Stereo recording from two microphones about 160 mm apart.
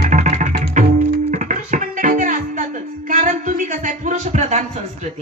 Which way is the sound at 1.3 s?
50° right (ahead or behind).